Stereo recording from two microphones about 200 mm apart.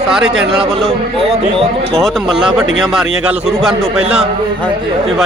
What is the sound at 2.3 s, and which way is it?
Speech, 25° right (ahead or behind).